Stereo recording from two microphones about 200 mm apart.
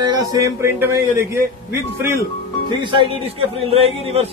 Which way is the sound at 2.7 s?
25° right (ahead or behind).